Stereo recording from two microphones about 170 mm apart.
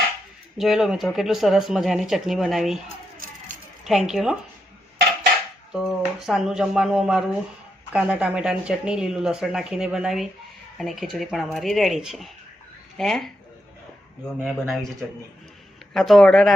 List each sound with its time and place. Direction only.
0.5 s speech: centre (ahead or behind)
3.5 s a sound: 50° right (ahead or behind)
3.8 s speech: 5° right (ahead or behind)
5.7 s speech: 5° right (ahead or behind)
15.9 s speech: centre (ahead or behind)